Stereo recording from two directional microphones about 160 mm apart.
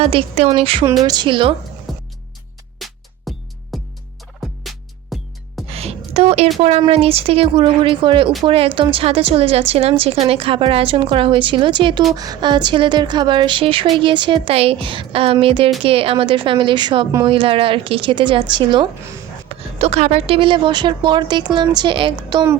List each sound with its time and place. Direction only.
0.0 s a woman's voice: 35° right (ahead or behind)
1.9 s music: centre (ahead or behind)
4.4 s turkey: centre (ahead or behind)
5.1 s music: centre (ahead or behind)
5.7 s a sound: 40° right (ahead or behind)
6.6 s a woman's voice: 40° right (ahead or behind)
19.5 s a woman's voice: 40° right (ahead or behind); by 22.5 s 25° right (ahead or behind)